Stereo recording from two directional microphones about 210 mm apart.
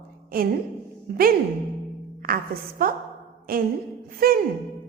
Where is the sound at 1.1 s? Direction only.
45° right (ahead or behind).